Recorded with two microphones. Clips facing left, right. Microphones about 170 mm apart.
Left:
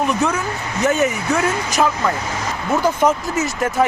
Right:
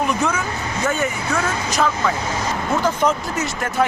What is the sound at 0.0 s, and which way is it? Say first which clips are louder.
Speech: left 2 dB; centre (ahead or behind).